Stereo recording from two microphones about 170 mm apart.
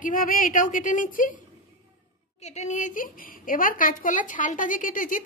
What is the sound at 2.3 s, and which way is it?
A woman's voice, 40° left (ahead or behind).